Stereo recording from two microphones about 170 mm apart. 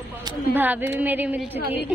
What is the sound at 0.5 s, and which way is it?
Speech, 10° right (ahead or behind).